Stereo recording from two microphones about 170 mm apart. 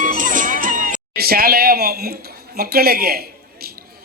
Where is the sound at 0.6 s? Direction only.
50° right (ahead or behind).